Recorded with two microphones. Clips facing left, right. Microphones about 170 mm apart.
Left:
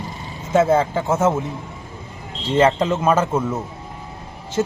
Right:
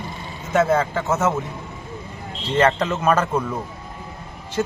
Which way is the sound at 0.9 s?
10° left (ahead or behind).